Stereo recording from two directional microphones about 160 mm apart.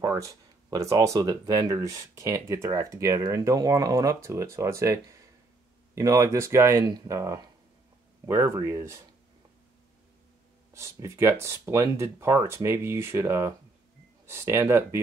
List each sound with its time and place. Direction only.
0.0 s speech: 20° right (ahead or behind)
10.7 s speech: 20° right (ahead or behind)